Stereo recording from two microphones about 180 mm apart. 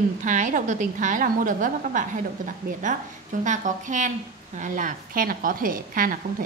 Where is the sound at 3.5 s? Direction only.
45° right (ahead or behind).